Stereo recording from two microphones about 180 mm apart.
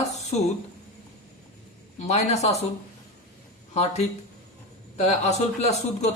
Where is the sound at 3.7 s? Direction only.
35° left (ahead or behind).